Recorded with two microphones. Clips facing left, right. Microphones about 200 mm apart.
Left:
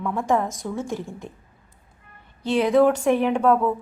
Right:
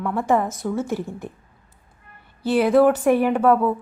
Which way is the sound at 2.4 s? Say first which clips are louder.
Right 2 dB; 5° right (ahead or behind).